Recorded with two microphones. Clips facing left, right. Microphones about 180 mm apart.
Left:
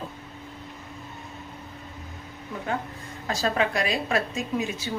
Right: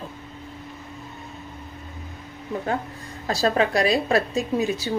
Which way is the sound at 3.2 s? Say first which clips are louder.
Right 4 dB; 35° right (ahead or behind).